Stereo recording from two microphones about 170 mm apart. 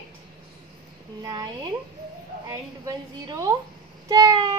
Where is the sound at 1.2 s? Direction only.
25° right (ahead or behind).